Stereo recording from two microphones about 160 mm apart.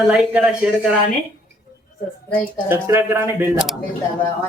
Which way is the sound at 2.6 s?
15° right (ahead or behind).